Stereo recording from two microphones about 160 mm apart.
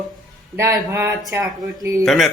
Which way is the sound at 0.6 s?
15° right (ahead or behind).